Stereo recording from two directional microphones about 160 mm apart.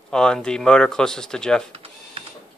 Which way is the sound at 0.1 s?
5° left (ahead or behind).